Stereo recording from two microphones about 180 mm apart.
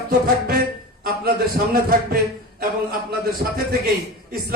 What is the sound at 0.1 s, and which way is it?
A man's voice, 55° right (ahead or behind).